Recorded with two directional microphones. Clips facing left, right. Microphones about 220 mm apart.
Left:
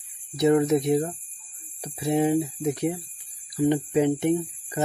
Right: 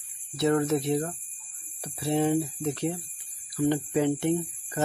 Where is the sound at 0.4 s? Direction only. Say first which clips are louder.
Left 4 dB; 15° left (ahead or behind).